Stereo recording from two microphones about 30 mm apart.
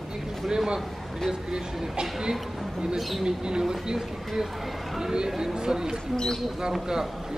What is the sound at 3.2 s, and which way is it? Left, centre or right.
Speech, right.